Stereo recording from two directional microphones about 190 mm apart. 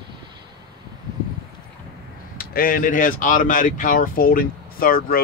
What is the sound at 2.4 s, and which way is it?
Speech, 50° left (ahead or behind).